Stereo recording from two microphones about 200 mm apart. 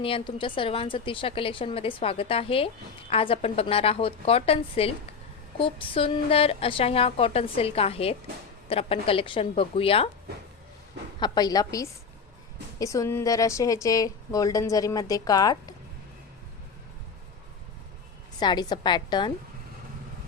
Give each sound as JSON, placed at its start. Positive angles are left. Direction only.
{"t": 0.0, "sound": "a woman's voice", "side_deg": 25}
{"t": 11.2, "sound": "a woman's voice", "side_deg": 20}
{"t": 18.3, "sound": "a woman's voice", "side_deg": 20}